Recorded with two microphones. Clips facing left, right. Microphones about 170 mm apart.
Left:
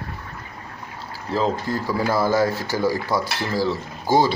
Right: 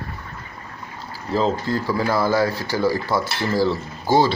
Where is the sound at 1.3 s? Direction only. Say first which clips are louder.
Right 2 dB; 5° left (ahead or behind).